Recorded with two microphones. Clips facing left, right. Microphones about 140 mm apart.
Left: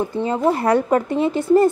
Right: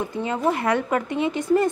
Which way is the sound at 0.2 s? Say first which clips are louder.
Left 4 dB; 35° left (ahead or behind).